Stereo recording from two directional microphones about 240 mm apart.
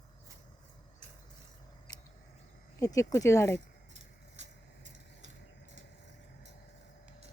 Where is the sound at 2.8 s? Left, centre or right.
Centre.